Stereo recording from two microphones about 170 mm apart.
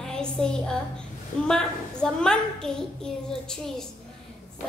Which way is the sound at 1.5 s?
5° left (ahead or behind).